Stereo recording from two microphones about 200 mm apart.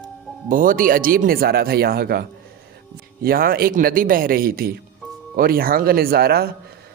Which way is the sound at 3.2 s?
45° right (ahead or behind).